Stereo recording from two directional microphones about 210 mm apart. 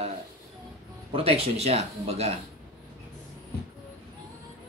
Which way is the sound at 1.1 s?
25° right (ahead or behind).